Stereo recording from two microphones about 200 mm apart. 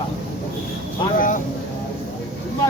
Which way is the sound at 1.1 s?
40° left (ahead or behind).